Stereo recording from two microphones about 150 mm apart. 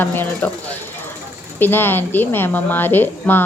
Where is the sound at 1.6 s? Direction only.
15° left (ahead or behind).